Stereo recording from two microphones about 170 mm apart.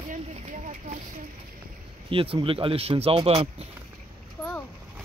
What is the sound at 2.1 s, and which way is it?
Speech, 30° right (ahead or behind).